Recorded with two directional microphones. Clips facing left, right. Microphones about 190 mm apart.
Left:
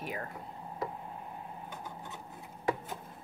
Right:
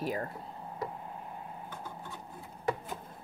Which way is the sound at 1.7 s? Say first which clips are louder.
Right 1 dB; 20° left (ahead or behind).